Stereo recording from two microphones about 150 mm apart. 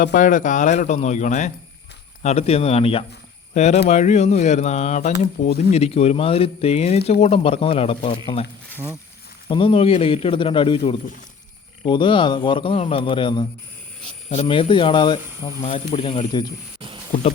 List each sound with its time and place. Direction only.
0.0 s speech: 60° left (ahead or behind)
2.2 s a man's voice: 45° left (ahead or behind)
9.5 s a man's voice: 35° left (ahead or behind)
15.6 s a man's voice: 40° left (ahead or behind)